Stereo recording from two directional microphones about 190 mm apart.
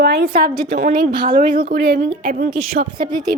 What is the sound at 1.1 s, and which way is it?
Speech, 25° right (ahead or behind).